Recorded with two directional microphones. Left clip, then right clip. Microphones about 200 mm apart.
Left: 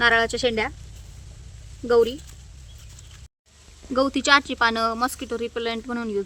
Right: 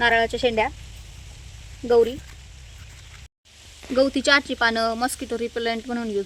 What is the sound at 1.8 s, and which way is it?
Speech, 15° left (ahead or behind).